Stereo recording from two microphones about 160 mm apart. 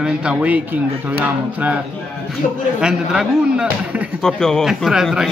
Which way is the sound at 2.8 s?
5° right (ahead or behind).